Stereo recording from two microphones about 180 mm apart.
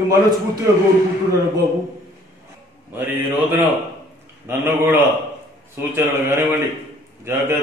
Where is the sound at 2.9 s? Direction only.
10° right (ahead or behind).